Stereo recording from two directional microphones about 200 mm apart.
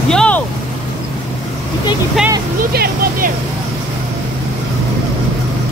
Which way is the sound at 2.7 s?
50° right (ahead or behind).